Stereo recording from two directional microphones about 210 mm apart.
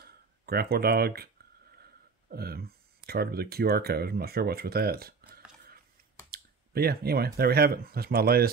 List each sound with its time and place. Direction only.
0.0 s speech: 45° right (ahead or behind)
6.3 s speech: 45° right (ahead or behind)